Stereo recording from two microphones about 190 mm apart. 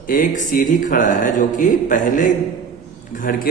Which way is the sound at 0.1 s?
45° left (ahead or behind).